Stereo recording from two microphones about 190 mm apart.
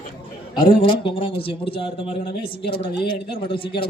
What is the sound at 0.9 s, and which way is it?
A man's voice, 30° left (ahead or behind).